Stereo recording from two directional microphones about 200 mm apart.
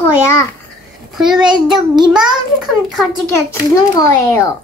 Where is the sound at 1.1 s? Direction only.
Centre (ahead or behind).